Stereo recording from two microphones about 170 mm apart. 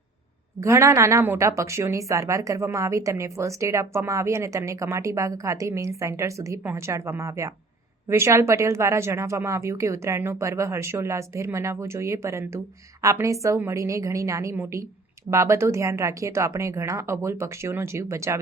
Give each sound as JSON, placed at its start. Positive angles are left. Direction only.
{"t": 0.6, "sound": "a woman's voice", "side_deg": -15}